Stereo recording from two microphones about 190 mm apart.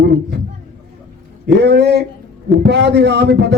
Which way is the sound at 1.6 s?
60° right (ahead or behind).